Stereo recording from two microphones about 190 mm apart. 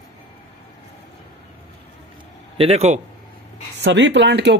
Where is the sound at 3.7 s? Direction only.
70° right (ahead or behind).